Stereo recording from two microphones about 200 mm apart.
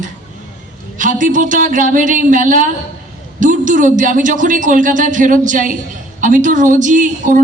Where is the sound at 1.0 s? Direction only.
40° right (ahead or behind).